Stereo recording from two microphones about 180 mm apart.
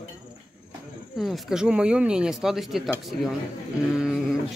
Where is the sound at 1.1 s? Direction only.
Centre (ahead or behind).